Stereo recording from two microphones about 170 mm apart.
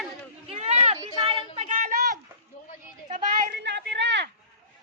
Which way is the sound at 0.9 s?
30° right (ahead or behind).